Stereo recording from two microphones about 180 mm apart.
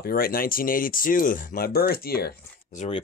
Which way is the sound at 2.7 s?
40° left (ahead or behind).